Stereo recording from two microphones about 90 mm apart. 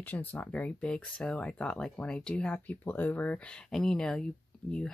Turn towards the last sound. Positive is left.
turn(degrees=10)  # may be behind; listen again after turning